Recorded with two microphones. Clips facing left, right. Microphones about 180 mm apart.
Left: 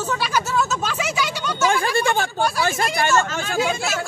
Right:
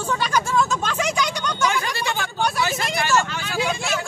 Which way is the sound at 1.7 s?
50° left (ahead or behind).